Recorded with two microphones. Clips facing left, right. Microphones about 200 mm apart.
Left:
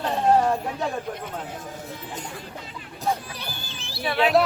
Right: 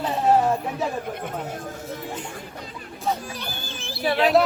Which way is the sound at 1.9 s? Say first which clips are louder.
Right 5 dB; 45° right (ahead or behind).